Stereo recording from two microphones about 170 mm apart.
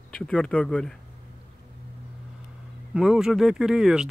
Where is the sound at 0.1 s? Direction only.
5° left (ahead or behind).